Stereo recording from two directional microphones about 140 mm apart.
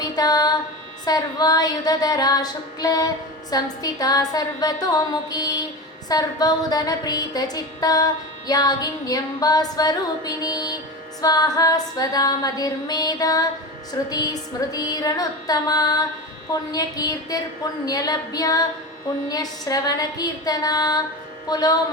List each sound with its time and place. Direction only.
0.0 s a woman's voice: 30° left (ahead or behind)